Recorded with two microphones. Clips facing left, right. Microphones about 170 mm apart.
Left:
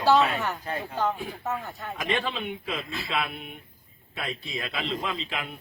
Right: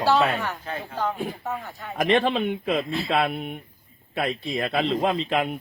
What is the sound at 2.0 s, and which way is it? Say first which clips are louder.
Speech: right 9 dB; 40° right (ahead or behind).